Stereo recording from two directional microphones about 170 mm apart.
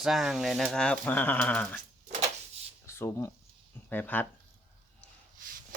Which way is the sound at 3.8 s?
10° left (ahead or behind).